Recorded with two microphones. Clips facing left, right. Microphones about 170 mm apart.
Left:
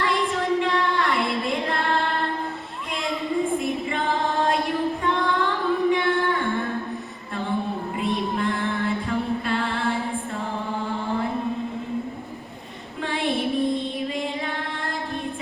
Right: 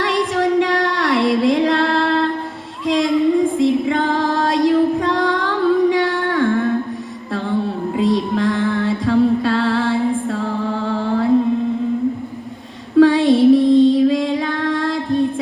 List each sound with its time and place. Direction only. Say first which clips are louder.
0.0 s music: right 6 dB; 85° right
2.8 s a sound: right 15 dB; 90° right
3.6 s music: right 10 dB; 90° right
7.9 s music: right 9 dB; 90° right
13.0 s music: right 15 dB; 90° right